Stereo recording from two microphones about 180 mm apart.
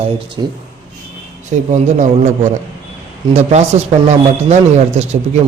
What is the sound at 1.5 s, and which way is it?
Speech, 45° right (ahead or behind).